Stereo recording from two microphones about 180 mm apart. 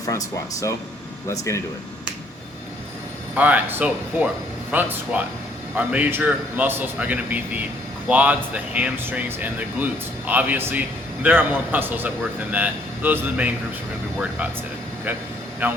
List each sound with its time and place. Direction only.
0.0 s speech: 20° left (ahead or behind)
3.3 s speech: 10° right (ahead or behind)
15.6 s speech: 10° right (ahead or behind)